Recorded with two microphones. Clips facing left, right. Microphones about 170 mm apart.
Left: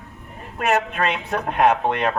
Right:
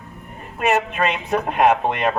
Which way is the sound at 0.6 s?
5° right (ahead or behind).